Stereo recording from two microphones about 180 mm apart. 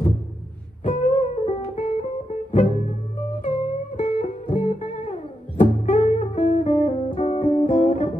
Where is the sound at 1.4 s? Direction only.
35° left (ahead or behind).